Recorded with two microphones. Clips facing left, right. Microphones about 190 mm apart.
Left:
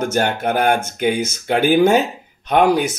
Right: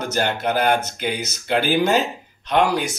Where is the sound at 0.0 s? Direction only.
50° left (ahead or behind).